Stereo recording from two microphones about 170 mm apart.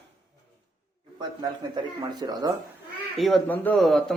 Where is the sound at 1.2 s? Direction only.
25° right (ahead or behind).